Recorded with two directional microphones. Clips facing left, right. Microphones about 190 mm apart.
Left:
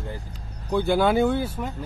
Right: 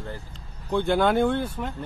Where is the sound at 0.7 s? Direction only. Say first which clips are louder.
Left 1 dB; 5° left (ahead or behind).